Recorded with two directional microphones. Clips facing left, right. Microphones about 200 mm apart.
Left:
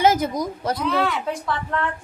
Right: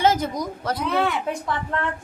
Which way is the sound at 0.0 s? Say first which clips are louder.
Left 2 dB; 10° left (ahead or behind).